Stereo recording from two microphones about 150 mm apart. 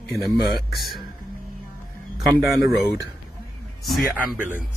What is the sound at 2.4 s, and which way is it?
Speech, 20° right (ahead or behind).